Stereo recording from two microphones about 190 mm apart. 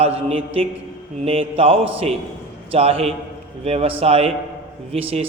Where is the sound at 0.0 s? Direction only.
30° right (ahead or behind).